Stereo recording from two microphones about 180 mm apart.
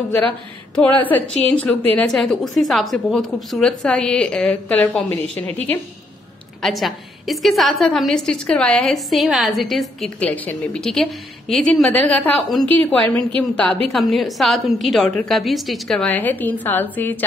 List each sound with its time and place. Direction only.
0.7 s a woman's voice: 10° left (ahead or behind)
6.6 s a woman's voice: centre (ahead or behind)